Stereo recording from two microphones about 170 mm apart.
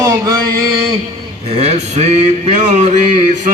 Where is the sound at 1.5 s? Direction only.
40° right (ahead or behind).